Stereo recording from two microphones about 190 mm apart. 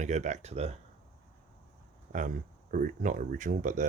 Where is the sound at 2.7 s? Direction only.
45° right (ahead or behind).